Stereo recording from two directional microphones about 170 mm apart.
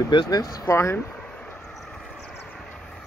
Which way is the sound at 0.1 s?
25° left (ahead or behind).